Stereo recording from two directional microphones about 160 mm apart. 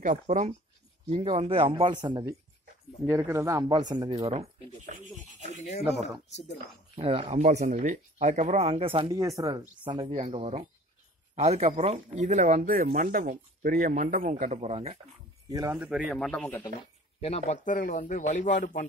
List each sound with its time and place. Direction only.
0.0 s speech: 50° right (ahead or behind)
1.1 s speech: 30° right (ahead or behind)
4.1 s speech: 40° right (ahead or behind)
5.6 s a man's voice: 45° left (ahead or behind)
7.0 s speech: 35° right (ahead or behind)
9.4 s speech: 20° right (ahead or behind); by 14.3 s 55° right (ahead or behind)
14.3 s speech: 45° right (ahead or behind)
15.5 s speech: 20° right (ahead or behind)
15.8 s speech: 5° right (ahead or behind)
16.3 s speech: 10° left (ahead or behind)
17.2 s a man's voice: 40° left (ahead or behind)